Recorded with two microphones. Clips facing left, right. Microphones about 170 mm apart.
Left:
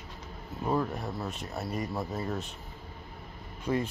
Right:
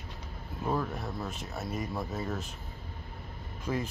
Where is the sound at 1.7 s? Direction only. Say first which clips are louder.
Left 1 dB; 5° right (ahead or behind).